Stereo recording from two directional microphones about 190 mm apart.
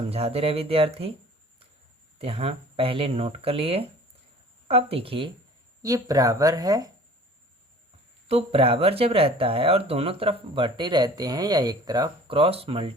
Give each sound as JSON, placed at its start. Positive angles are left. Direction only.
{"t": 0.1, "sound": "speech", "side_deg": -30}
{"t": 2.1, "sound": "speech", "side_deg": -30}
{"t": 5.8, "sound": "speech", "side_deg": -20}
{"t": 8.3, "sound": "speech", "side_deg": -30}